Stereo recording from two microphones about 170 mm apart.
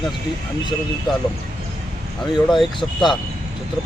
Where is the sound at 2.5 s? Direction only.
Centre (ahead or behind).